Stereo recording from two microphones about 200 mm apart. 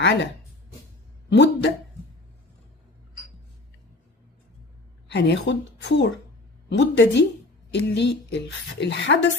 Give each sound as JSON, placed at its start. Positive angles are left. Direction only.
{"t": 0.0, "sound": "a woman's voice", "side_deg": 60}
{"t": 1.3, "sound": "a woman's voice", "side_deg": 60}
{"t": 5.0, "sound": "a woman's voice", "side_deg": 60}